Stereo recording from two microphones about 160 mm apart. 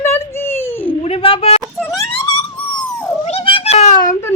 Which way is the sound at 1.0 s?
35° left (ahead or behind).